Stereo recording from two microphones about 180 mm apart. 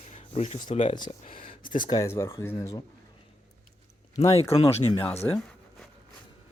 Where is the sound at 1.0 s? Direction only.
45° left (ahead or behind).